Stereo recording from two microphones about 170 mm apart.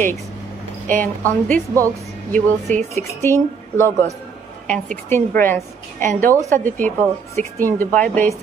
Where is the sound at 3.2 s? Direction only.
15° left (ahead or behind).